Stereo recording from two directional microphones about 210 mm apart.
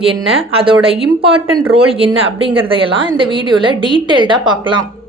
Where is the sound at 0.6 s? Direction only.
25° right (ahead or behind).